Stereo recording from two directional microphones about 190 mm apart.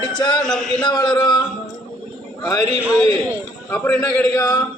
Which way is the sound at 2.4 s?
20° left (ahead or behind).